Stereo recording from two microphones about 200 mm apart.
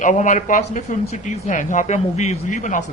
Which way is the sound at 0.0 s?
40° left (ahead or behind).